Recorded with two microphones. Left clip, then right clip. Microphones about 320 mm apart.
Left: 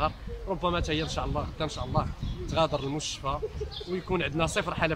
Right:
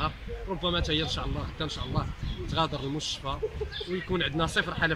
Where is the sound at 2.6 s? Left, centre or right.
Centre.